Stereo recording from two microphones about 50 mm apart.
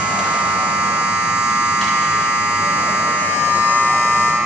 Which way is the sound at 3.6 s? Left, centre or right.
Right.